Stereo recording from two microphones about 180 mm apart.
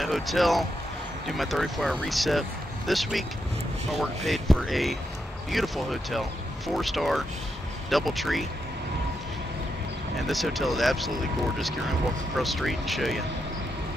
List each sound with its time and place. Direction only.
0.0 s speech: centre (ahead or behind)
10.1 s speech: centre (ahead or behind)